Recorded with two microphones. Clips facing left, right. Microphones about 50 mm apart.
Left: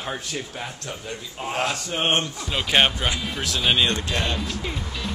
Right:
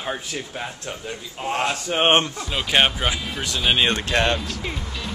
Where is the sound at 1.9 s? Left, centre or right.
Right.